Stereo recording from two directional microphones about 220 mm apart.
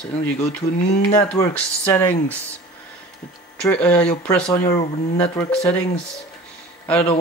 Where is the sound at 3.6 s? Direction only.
5° left (ahead or behind).